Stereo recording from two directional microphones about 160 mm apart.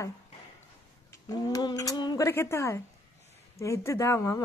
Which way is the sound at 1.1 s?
20° left (ahead or behind).